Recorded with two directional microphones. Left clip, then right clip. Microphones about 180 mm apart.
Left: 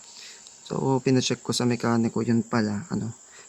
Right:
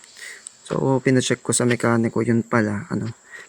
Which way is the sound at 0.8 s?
20° right (ahead or behind).